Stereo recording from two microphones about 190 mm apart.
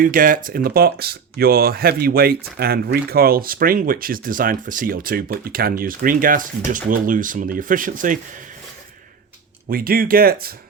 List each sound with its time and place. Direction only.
0.0 s speech: 45° right (ahead or behind)
9.6 s speech: 50° right (ahead or behind)